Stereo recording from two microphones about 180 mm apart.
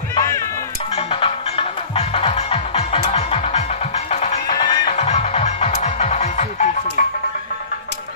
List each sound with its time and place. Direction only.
0.1 s music: 20° left (ahead or behind)
0.9 s music: 30° left (ahead or behind)
4.9 s music: 40° left (ahead or behind)